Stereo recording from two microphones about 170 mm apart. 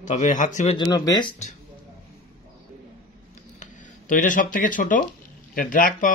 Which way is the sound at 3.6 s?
50° left (ahead or behind).